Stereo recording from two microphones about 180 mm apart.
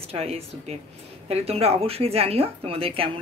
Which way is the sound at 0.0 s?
35° right (ahead or behind).